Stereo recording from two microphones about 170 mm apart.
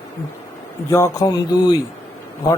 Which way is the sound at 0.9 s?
20° left (ahead or behind).